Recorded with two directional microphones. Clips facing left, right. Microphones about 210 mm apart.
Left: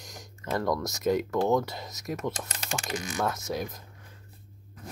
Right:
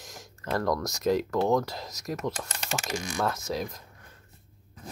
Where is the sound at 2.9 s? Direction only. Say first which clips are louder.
Even; 25° right (ahead or behind).